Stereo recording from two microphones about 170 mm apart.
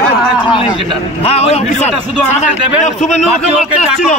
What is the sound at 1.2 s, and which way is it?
A man's voice, 35° left (ahead or behind).